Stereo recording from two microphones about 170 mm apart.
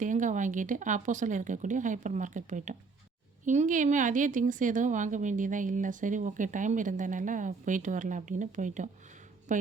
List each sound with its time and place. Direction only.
0.0 s speech: 50° right (ahead or behind)